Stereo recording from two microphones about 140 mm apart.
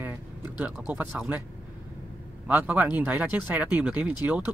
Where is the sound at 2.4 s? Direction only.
10° right (ahead or behind).